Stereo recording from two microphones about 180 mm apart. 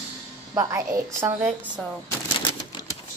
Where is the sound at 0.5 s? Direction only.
20° right (ahead or behind).